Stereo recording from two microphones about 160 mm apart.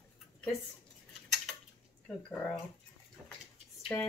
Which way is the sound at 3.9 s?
15° left (ahead or behind).